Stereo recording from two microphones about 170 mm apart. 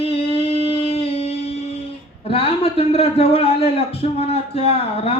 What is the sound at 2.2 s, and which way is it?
A man's voice, 35° left (ahead or behind).